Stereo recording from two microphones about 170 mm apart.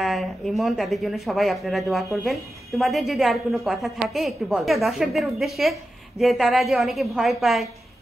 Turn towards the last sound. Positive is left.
turn(degrees=0)  # may be behind; listen again after turning